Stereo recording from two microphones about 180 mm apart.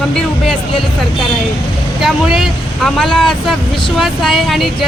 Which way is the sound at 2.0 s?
Centre (ahead or behind).